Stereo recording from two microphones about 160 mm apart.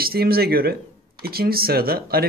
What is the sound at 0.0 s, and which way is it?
Speech, 70° right (ahead or behind).